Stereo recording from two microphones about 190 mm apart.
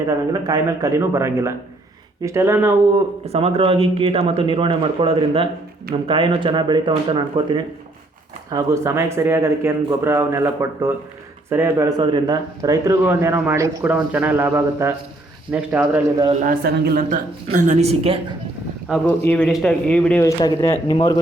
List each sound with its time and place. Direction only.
0.0 s speech: 15° right (ahead or behind)
3.2 s speech: 30° right (ahead or behind); by 16.0 s 10° right (ahead or behind)
16.4 s a woman's voice: 50° right (ahead or behind); by 18.2 s 30° right (ahead or behind)
19.0 s speech: 10° left (ahead or behind)